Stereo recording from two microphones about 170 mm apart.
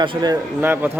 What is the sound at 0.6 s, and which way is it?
Speech, 10° right (ahead or behind).